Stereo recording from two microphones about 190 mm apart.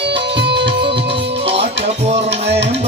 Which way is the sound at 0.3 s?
65° right (ahead or behind).